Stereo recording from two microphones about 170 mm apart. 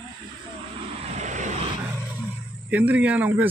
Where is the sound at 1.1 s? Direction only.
45° right (ahead or behind).